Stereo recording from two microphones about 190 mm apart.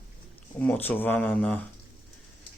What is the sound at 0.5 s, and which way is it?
Speech, 10° left (ahead or behind).